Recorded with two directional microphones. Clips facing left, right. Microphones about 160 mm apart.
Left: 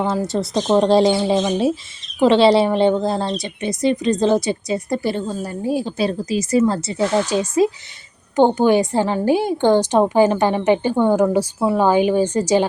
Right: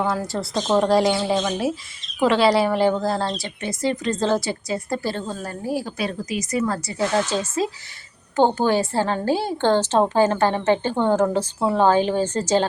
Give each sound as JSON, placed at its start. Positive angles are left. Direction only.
{"t": 0.0, "sound": "a woman's voice", "side_deg": 20}